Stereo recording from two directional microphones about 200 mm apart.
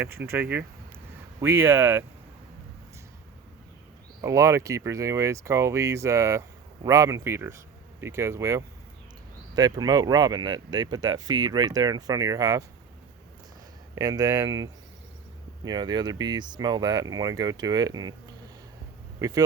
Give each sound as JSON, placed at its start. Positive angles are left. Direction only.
{"t": 0.0, "sound": "speech", "side_deg": -10}
{"t": 4.2, "sound": "speech", "side_deg": -15}
{"t": 13.9, "sound": "speech", "side_deg": -20}
{"t": 19.2, "sound": "speech", "side_deg": -15}